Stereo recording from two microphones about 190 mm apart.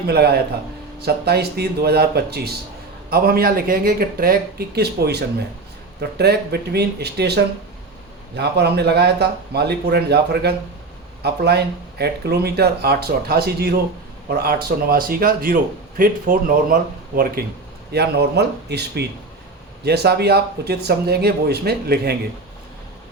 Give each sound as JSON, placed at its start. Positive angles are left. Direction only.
{"t": 0.1, "sound": "speech", "side_deg": -55}